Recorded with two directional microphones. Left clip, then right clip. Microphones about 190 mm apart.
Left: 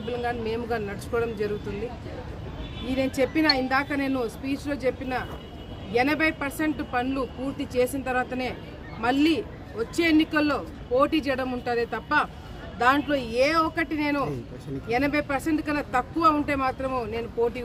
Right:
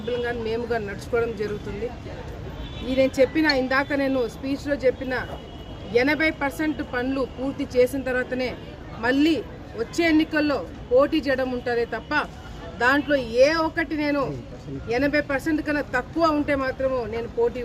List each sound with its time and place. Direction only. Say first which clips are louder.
0.3 s speech: right 2 dB; 5° left (ahead or behind)
2.9 s speech: right 5 dB; 5° left (ahead or behind)